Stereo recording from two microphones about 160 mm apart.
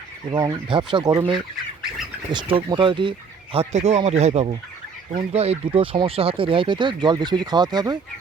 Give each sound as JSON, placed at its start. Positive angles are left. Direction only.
{"t": 0.3, "sound": "speech", "side_deg": -25}
{"t": 2.3, "sound": "speech", "side_deg": -30}